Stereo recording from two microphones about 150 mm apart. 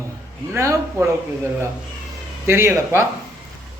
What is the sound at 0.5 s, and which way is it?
Speech, 20° right (ahead or behind).